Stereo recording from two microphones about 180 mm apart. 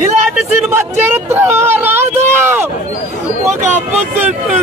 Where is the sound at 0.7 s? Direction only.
10° right (ahead or behind).